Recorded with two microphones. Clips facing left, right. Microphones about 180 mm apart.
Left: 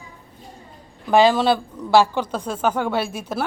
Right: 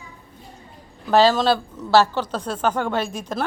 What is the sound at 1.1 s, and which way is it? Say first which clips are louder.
A woman's voice: left 1 dB; 10° left (ahead or behind).